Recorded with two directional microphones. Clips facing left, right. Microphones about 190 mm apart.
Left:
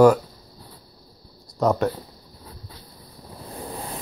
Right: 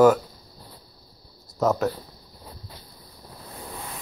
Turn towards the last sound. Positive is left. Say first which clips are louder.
# left 4 dB
turn(degrees=35)  # may be behind; listen again after turning